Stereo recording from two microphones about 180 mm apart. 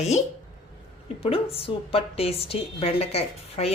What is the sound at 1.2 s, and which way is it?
A woman's voice, 30° left (ahead or behind).